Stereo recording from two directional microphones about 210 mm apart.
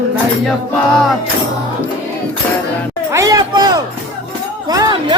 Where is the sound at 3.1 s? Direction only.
15° right (ahead or behind).